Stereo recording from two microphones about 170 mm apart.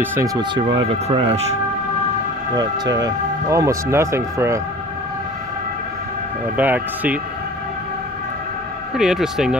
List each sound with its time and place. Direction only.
0.0 s speech: 15° right (ahead or behind)
1.0 s speech: 40° right (ahead or behind)
2.5 s speech: 25° right (ahead or behind)
6.5 s speech: 10° right (ahead or behind)
8.9 s speech: 5° right (ahead or behind)